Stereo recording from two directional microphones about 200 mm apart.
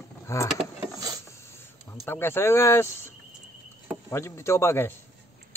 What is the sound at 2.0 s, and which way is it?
Speech, 10° left (ahead or behind).